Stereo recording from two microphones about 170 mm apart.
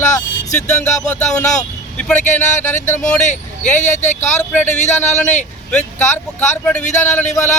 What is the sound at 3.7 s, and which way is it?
A man's voice, 45° left (ahead or behind).